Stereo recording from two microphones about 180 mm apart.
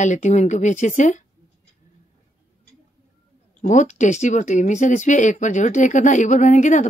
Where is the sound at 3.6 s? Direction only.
40° left (ahead or behind).